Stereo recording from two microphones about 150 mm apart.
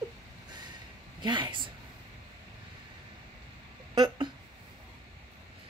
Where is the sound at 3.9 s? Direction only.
30° right (ahead or behind).